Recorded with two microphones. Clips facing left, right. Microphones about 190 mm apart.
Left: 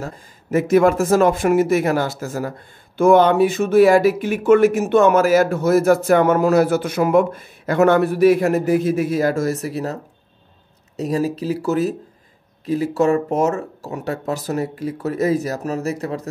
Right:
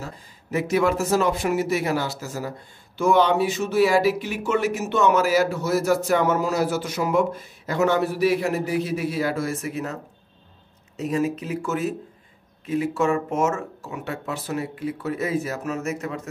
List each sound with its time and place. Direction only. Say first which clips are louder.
0.0 s speech: left 6 dB; 50° left (ahead or behind)
11.0 s speech: left 3 dB; 35° left (ahead or behind)